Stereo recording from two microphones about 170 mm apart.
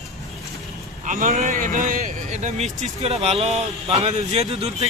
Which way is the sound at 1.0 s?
50° right (ahead or behind).